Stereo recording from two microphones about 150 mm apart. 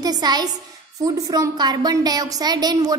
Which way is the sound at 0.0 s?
25° right (ahead or behind).